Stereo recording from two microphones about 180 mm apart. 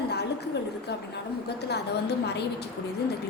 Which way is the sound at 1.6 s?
65° left (ahead or behind).